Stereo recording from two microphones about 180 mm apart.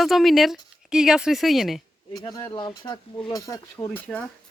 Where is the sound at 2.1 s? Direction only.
20° left (ahead or behind).